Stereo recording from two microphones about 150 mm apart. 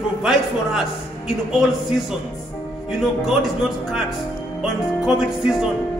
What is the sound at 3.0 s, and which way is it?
Music, 5° right (ahead or behind).